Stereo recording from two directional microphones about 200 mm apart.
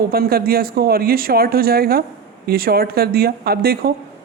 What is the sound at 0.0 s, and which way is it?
Speech, 50° right (ahead or behind).